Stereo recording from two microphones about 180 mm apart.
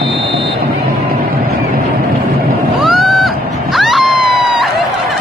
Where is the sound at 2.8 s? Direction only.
Centre (ahead or behind).